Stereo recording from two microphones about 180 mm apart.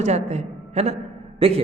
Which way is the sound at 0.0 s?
40° right (ahead or behind).